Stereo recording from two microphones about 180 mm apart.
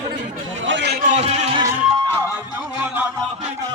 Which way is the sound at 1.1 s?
35° right (ahead or behind).